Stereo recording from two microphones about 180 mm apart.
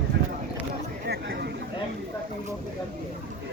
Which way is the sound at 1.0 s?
65° right (ahead or behind).